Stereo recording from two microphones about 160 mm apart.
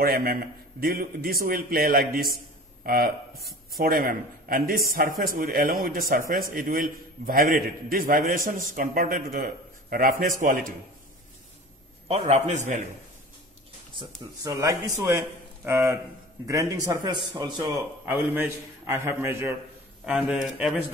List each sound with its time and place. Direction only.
0.0 s a man's voice: 70° right (ahead or behind)
2.3 s a sound: 65° right (ahead or behind)
3.7 s a man's voice: 65° right (ahead or behind)
12.1 s a man's voice: 40° right (ahead or behind)
13.9 s a man's voice: 20° right (ahead or behind)
18.0 s a man's voice: 10° right (ahead or behind)
20.1 s a man's voice: centre (ahead or behind)